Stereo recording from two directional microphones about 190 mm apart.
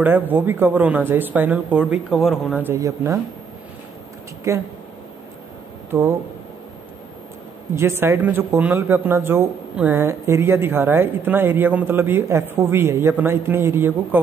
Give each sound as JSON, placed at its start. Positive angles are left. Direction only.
{"t": 0.0, "sound": "speech", "side_deg": -10}
{"t": 4.5, "sound": "speech", "side_deg": -15}
{"t": 5.9, "sound": "speech", "side_deg": -15}
{"t": 7.7, "sound": "speech", "side_deg": -15}